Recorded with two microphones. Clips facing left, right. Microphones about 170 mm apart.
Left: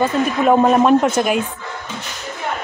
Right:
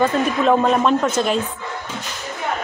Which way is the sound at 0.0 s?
10° left (ahead or behind).